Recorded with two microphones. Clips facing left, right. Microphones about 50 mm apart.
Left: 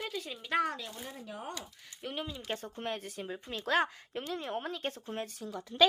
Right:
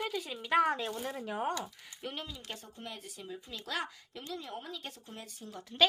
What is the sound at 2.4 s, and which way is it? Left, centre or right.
Speech, left.